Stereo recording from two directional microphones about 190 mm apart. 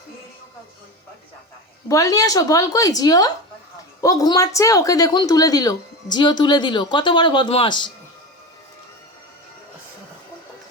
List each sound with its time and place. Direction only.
1.9 s a woman's voice: 15° left (ahead or behind)